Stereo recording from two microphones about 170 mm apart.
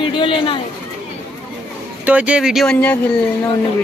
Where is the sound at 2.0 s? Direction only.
10° right (ahead or behind); by 2.9 s 5° left (ahead or behind).